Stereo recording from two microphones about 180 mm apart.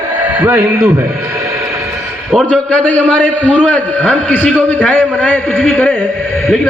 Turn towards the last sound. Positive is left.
turn(degrees=10)  # may be behind; listen again after turning